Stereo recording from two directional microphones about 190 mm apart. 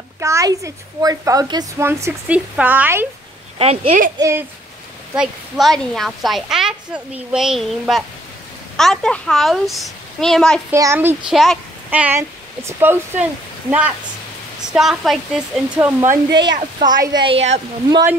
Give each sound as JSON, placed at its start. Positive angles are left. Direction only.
{"t": 0.2, "sound": "speech", "side_deg": -15}
{"t": 3.5, "sound": "speech", "side_deg": -30}
{"t": 4.2, "sound": "speech", "side_deg": -15}
{"t": 5.1, "sound": "a woman's voice", "side_deg": 0}
{"t": 10.7, "sound": "a woman's voice", "side_deg": -15}
{"t": 16.8, "sound": "speech", "side_deg": -20}